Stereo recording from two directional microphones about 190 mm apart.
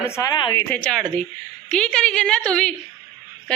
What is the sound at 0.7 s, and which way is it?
A woman's voice, 5° left (ahead or behind).